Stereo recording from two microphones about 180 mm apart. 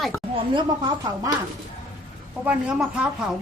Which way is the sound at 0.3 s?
25° right (ahead or behind).